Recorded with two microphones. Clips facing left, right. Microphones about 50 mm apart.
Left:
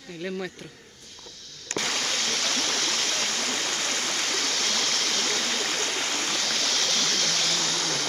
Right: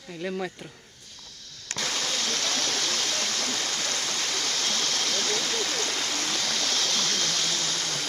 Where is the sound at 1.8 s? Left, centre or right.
Left.